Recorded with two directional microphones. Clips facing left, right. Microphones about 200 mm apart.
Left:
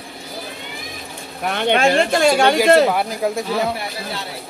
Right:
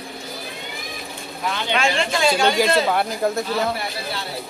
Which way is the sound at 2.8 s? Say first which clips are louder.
Left 1 dB; 5° left (ahead or behind).